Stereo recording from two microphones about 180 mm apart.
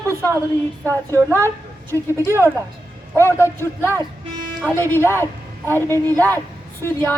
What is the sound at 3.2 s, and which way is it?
Speech, 15° left (ahead or behind).